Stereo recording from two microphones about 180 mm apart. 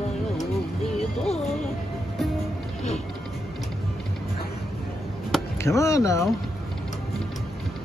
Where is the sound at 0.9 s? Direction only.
35° left (ahead or behind).